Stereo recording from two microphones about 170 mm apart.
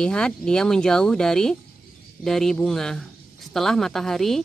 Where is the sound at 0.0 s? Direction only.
5° left (ahead or behind).